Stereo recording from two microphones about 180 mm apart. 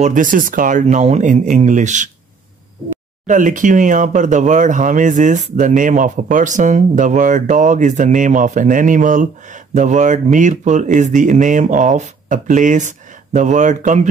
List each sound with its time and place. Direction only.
0.0 s speech: 45° right (ahead or behind)
3.3 s speech: 45° right (ahead or behind)